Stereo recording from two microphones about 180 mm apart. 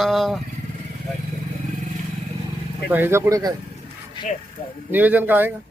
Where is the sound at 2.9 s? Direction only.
15° right (ahead or behind).